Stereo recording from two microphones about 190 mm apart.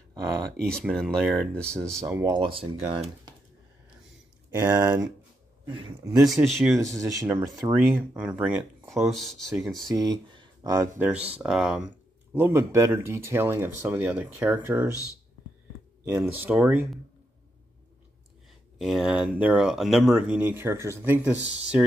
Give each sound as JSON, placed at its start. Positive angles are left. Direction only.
{"t": 0.6, "sound": "speech", "side_deg": 5}
{"t": 2.2, "sound": "speech", "side_deg": -25}
{"t": 4.6, "sound": "speech", "side_deg": -15}
{"t": 5.7, "sound": "speech", "side_deg": -30}
{"t": 6.2, "sound": "speech", "side_deg": 0}
{"t": 6.8, "sound": "speech", "side_deg": -15}
{"t": 9.9, "sound": "speech", "side_deg": -20}
{"t": 11.0, "sound": "speech", "side_deg": -5}
{"t": 16.2, "sound": "speech", "side_deg": -5}
{"t": 18.8, "sound": "speech", "side_deg": 0}